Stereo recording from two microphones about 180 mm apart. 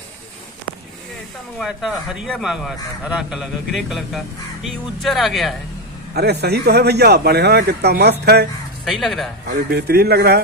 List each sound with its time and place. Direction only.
1.6 s speech: centre (ahead or behind)
6.1 s a man's voice: 65° right (ahead or behind)
8.8 s speech: centre (ahead or behind)
9.7 s a man's voice: 60° right (ahead or behind)